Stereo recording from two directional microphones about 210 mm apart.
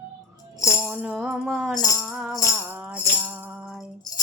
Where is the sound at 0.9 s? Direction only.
5° right (ahead or behind).